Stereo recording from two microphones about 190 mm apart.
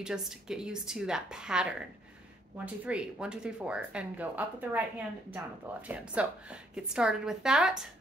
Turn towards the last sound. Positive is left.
turn(degrees=-5)  # may be behind; listen again after turning